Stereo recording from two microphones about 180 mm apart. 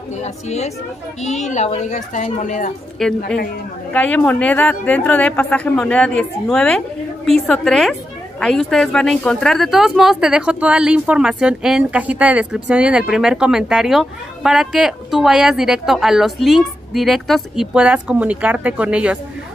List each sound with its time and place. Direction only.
0.2 s a woman's voice: 35° left (ahead or behind)
3.0 s a woman's voice: centre (ahead or behind)